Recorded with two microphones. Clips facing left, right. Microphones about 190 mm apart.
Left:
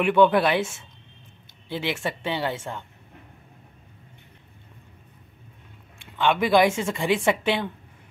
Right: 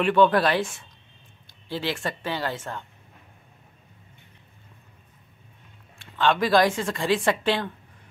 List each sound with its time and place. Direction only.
0.0 s a woman's voice: 15° left (ahead or behind)
1.7 s a woman's voice: 20° left (ahead or behind)
5.9 s a woman's voice: 15° left (ahead or behind)